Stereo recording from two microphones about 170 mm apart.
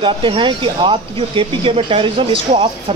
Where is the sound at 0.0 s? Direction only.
30° right (ahead or behind).